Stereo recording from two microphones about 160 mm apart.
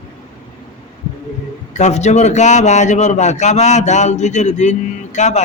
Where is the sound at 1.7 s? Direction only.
45° left (ahead or behind).